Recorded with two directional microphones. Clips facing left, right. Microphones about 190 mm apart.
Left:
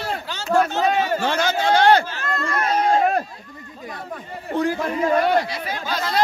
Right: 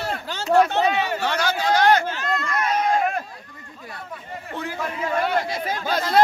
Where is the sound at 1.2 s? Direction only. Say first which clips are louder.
Left 2 dB; 25° left (ahead or behind).